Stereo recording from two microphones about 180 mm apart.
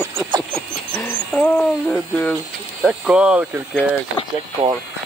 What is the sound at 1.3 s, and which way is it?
Speech, centre (ahead or behind).